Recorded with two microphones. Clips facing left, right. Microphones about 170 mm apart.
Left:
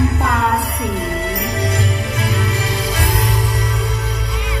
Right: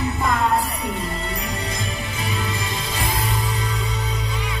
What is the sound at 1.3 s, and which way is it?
Music, 75° left (ahead or behind).